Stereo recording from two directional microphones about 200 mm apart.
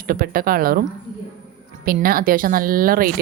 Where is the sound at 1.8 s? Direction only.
45° right (ahead or behind).